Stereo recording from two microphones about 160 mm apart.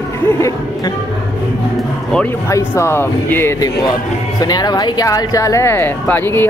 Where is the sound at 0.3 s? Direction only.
20° left (ahead or behind).